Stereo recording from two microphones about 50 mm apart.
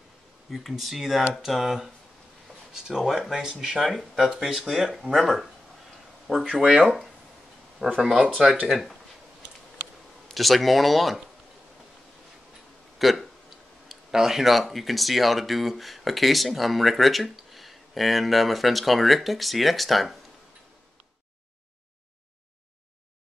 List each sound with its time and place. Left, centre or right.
0.5 s speech: centre
3.8 s speech: centre
4.3 s speech: centre
6.3 s speech: centre
6.7 s speech: centre
8.6 s speech: centre
10.3 s speech: centre
13.0 s speech: centre